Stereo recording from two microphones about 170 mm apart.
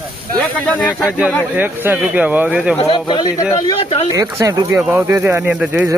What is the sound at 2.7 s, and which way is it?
Speech, 30° left (ahead or behind).